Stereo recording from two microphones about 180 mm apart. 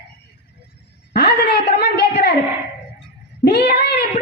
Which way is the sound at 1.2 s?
65° left (ahead or behind).